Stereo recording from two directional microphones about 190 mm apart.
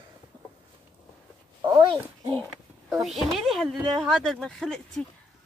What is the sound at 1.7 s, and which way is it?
Speech, 25° right (ahead or behind).